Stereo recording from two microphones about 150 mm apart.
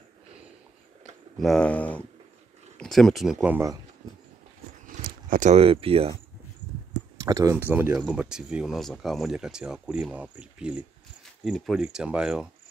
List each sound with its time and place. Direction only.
1.4 s speech: 5° left (ahead or behind)
4.8 s a sound: 65° right (ahead or behind)
5.6 s speech: 40° right (ahead or behind)
7.2 s speech: 25° right (ahead or behind); by 12.4 s 5° right (ahead or behind)